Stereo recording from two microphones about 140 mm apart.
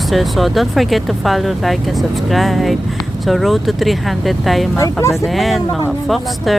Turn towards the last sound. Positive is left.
turn(degrees=0)  # may be behind; listen again after turning